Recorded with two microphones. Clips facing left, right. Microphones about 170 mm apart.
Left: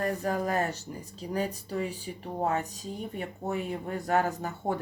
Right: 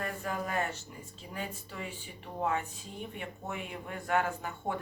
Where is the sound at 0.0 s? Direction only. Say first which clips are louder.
Left 7 dB; 40° left (ahead or behind).